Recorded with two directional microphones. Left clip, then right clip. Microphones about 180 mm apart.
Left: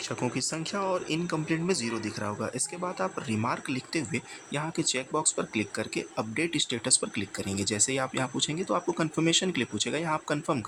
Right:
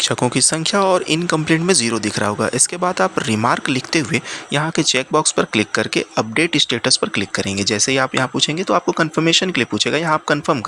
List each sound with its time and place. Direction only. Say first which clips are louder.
0.0 s speech: right 15 dB; 35° right (ahead or behind)